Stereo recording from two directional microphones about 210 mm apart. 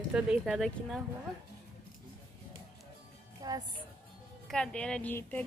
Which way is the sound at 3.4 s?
15° right (ahead or behind).